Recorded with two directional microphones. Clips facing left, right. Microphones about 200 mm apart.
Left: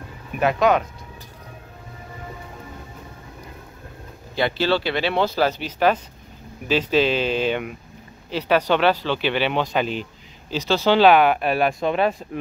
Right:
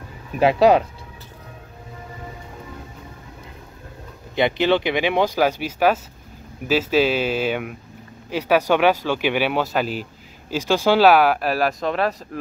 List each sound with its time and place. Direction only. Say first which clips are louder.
0.4 s speech: right 4 dB; 30° right (ahead or behind)
4.4 s speech: right 3 dB; 20° right (ahead or behind); by 12.2 s centre (ahead or behind)